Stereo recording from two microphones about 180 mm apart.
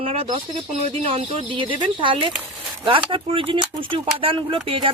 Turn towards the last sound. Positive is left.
turn(degrees=-30)  # may be behind; listen again after turning